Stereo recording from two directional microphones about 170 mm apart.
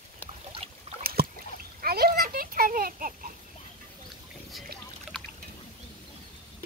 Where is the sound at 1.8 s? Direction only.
65° right (ahead or behind).